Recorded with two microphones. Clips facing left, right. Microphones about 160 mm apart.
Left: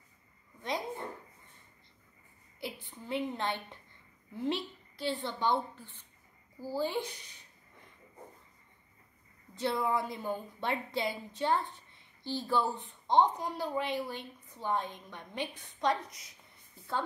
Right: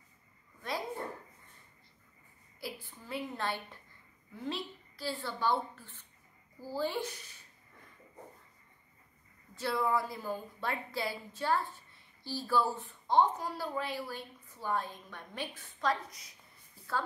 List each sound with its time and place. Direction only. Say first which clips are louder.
0.6 s a sound: left 2 dB; 20° left (ahead or behind)
2.6 s a woman's voice: left 2 dB; 20° left (ahead or behind)
6.6 s speech: left 1 dB; 15° left (ahead or behind)
9.6 s a woman's voice: even; 20° left (ahead or behind)
15.9 s a woman's voice: even; centre (ahead or behind)